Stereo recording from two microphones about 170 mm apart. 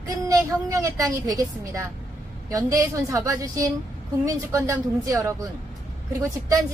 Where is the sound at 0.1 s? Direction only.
20° right (ahead or behind).